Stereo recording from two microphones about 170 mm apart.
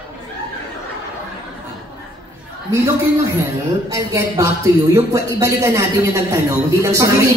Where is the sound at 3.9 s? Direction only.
20° right (ahead or behind).